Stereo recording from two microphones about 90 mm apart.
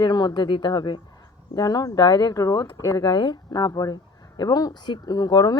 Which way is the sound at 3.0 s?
55° left (ahead or behind).